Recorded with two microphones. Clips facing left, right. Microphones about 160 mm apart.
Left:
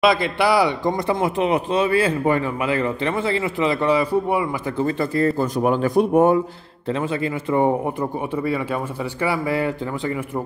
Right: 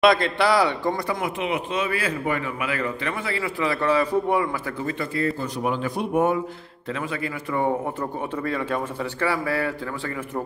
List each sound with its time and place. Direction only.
0.0 s a man's voice: 10° left (ahead or behind)
4.7 s a man's voice: 35° left (ahead or behind)
6.9 s speech: 25° left (ahead or behind)